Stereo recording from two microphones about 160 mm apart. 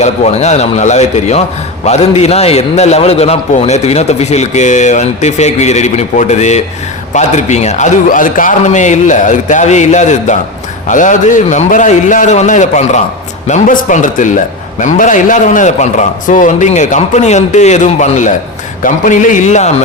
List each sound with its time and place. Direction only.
0.0 s a man's voice: 45° left (ahead or behind)